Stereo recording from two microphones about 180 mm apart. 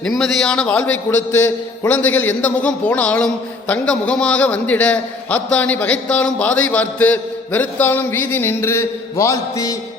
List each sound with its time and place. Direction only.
0.1 s a man's voice: 5° left (ahead or behind)